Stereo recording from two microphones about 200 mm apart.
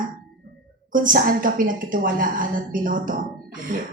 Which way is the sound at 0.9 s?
40° right (ahead or behind).